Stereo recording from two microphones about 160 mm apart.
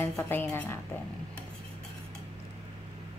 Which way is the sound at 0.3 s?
15° left (ahead or behind).